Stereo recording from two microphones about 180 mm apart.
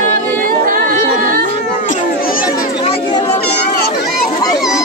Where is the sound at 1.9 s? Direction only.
50° left (ahead or behind).